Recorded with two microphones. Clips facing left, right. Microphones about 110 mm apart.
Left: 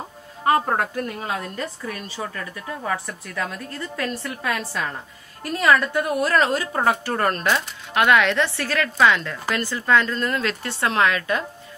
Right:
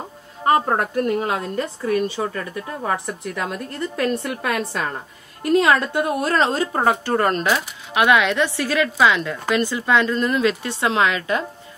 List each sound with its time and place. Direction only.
0.5 s a woman's voice: 25° right (ahead or behind)